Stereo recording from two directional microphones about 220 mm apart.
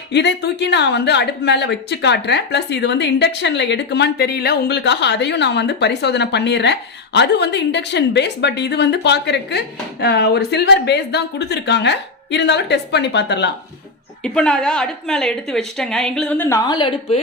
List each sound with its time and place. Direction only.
0.1 s a woman's voice: 50° left (ahead or behind)
14.3 s a woman's voice: 5° left (ahead or behind); by 17.2 s 20° left (ahead or behind)